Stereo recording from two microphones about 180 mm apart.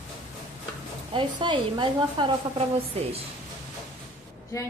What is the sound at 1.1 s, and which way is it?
A woman's voice, 25° right (ahead or behind).